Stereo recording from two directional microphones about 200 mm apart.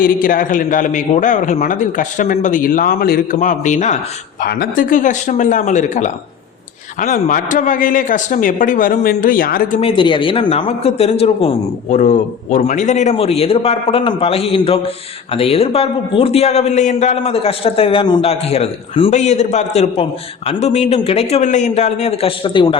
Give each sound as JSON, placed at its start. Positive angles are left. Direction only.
{"t": 0.0, "sound": "a man's voice", "side_deg": 45}
{"t": 9.8, "sound": "a man's voice", "side_deg": 25}